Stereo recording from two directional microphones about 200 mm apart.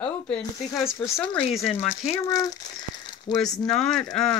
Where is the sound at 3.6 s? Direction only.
Centre (ahead or behind).